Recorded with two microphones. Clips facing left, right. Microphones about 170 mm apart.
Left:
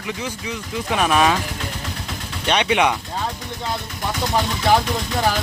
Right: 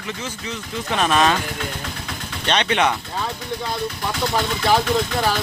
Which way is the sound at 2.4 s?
10° left (ahead or behind).